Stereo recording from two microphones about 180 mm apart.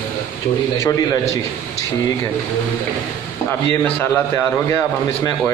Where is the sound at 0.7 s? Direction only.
20° left (ahead or behind).